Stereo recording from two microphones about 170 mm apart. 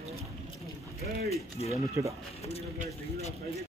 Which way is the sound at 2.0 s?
15° right (ahead or behind).